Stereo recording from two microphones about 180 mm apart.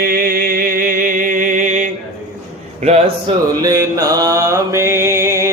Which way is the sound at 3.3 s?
30° right (ahead or behind).